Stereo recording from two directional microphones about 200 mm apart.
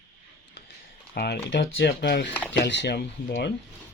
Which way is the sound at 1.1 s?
55° left (ahead or behind).